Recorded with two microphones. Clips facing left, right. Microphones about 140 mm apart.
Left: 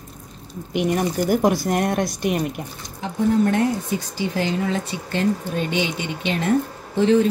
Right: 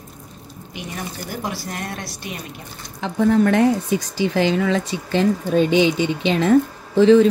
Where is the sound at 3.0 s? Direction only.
75° right (ahead or behind).